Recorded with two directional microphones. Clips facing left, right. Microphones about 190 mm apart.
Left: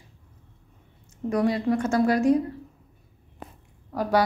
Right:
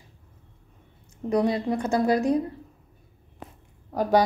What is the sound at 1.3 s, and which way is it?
Speech, 30° right (ahead or behind).